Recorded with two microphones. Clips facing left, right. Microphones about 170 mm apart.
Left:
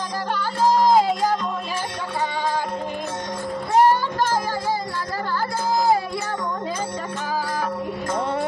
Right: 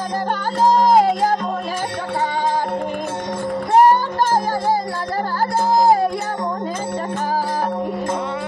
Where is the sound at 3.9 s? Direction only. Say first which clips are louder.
Right 4 dB; 50° right (ahead or behind).